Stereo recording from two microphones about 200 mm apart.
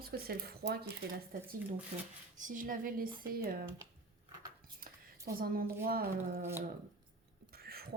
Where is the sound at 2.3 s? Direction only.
40° right (ahead or behind).